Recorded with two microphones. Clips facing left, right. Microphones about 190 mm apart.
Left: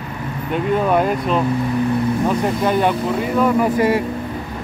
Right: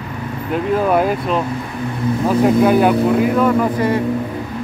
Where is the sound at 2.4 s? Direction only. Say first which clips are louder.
Right 5 dB; 5° right (ahead or behind).